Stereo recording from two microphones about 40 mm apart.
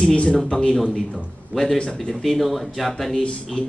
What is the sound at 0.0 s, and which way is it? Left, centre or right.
Speech, left.